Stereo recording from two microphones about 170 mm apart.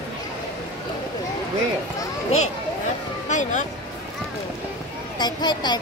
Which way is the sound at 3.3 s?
45° left (ahead or behind).